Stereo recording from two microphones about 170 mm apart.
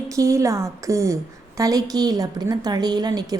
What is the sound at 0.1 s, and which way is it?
A woman's voice, 20° right (ahead or behind).